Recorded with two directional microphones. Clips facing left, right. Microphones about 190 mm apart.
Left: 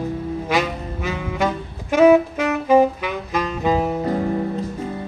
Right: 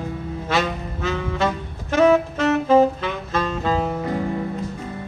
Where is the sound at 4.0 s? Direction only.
35° left (ahead or behind).